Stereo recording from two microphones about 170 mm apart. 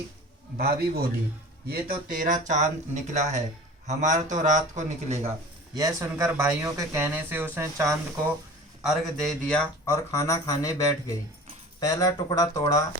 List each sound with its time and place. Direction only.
0.5 s a man's voice: 70° right (ahead or behind)
2.1 s a man's voice: 50° right (ahead or behind)
5.7 s speech: 20° right (ahead or behind)
8.8 s speech: centre (ahead or behind)
9.8 s speech: 15° left (ahead or behind)